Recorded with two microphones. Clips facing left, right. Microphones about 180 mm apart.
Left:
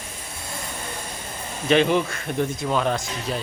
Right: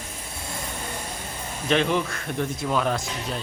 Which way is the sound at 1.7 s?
5° left (ahead or behind).